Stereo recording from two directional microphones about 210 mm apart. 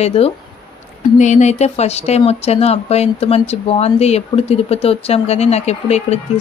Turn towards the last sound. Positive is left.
turn(degrees=30)  # may be behind; listen again after turning